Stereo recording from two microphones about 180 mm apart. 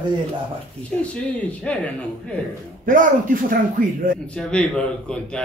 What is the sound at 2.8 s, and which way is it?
Speech, 50° right (ahead or behind).